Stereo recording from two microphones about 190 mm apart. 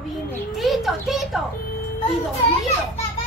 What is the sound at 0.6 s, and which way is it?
Speech, centre (ahead or behind).